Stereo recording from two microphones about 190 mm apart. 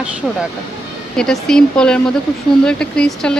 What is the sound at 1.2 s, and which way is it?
Speech, 5° left (ahead or behind).